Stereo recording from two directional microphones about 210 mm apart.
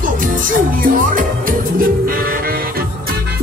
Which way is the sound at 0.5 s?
40° right (ahead or behind).